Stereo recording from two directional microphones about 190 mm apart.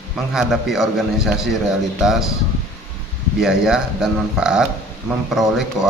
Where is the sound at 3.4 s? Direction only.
Centre (ahead or behind).